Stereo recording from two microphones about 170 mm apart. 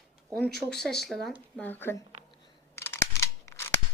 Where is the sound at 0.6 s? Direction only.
5° left (ahead or behind).